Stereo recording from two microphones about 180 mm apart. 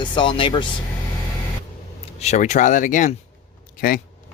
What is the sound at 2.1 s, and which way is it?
Speech, 40° left (ahead or behind).